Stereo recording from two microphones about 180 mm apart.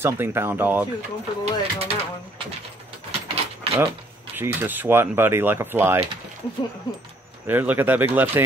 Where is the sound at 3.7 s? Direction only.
30° right (ahead or behind).